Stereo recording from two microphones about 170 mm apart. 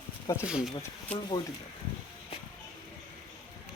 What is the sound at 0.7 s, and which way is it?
Speech, 25° left (ahead or behind).